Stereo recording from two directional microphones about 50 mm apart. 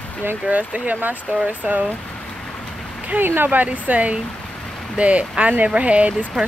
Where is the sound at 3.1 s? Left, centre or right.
Right.